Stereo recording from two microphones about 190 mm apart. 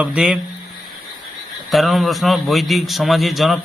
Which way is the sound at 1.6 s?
Centre (ahead or behind).